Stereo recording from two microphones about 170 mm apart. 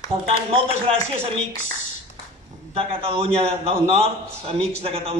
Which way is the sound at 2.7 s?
35° right (ahead or behind).